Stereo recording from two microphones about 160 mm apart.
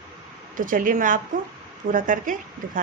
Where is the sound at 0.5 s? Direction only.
60° right (ahead or behind).